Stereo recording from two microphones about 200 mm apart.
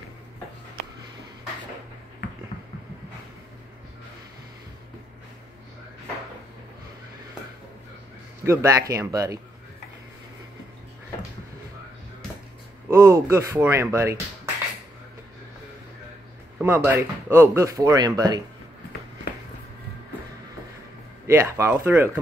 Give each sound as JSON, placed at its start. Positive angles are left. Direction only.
{"t": 8.5, "sound": "speech", "side_deg": -15}
{"t": 12.9, "sound": "speech", "side_deg": -15}
{"t": 16.5, "sound": "speech", "side_deg": -10}
{"t": 21.3, "sound": "speech", "side_deg": -10}